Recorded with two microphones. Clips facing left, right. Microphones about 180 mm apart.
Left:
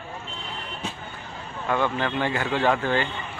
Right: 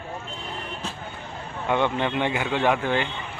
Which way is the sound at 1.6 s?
20° right (ahead or behind).